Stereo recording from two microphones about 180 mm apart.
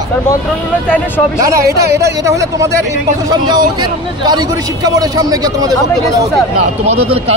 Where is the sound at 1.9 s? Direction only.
15° right (ahead or behind).